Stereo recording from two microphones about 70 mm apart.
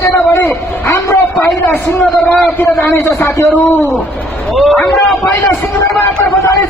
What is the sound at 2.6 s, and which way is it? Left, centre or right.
Speech, left.